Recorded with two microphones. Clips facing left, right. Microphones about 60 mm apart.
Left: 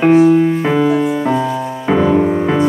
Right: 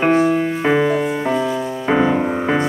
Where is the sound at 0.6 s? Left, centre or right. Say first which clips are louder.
Left 2 dB; right.